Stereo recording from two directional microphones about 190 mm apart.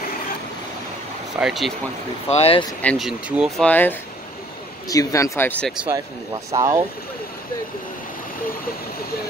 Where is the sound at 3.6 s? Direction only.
10° left (ahead or behind).